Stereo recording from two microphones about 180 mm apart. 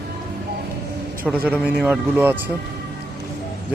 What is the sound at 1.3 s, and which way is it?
A man's voice, centre (ahead or behind).